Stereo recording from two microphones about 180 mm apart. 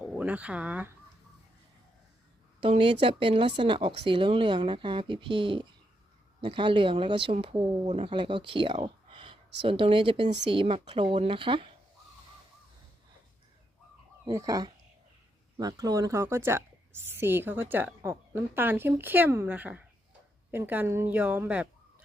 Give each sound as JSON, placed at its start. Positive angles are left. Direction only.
{"t": 0.0, "sound": "speech", "side_deg": -10}
{"t": 2.6, "sound": "speech", "side_deg": -30}
{"t": 14.3, "sound": "a woman's voice", "side_deg": -20}